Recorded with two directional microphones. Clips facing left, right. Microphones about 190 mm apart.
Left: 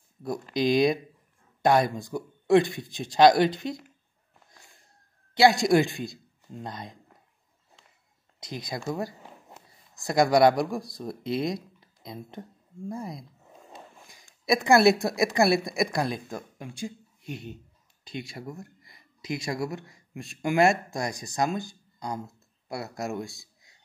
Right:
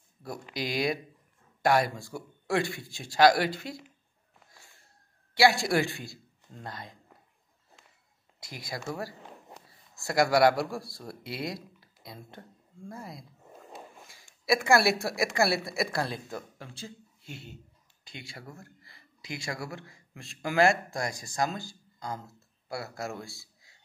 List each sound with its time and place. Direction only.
0.6 s speech: 20° left (ahead or behind)
4.5 s a sound: 15° left (ahead or behind)
5.3 s speech: 20° left (ahead or behind)
8.4 s speech: 20° left (ahead or behind)